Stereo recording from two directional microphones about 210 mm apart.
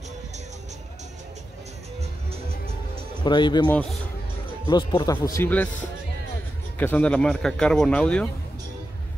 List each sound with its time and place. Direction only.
3.3 s speech: 20° left (ahead or behind)
4.6 s speech: 20° left (ahead or behind)
6.8 s speech: 10° left (ahead or behind)